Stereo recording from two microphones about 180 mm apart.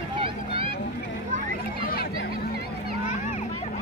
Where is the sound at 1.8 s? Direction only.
55° left (ahead or behind).